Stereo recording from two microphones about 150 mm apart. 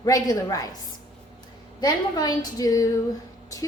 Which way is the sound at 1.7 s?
25° left (ahead or behind).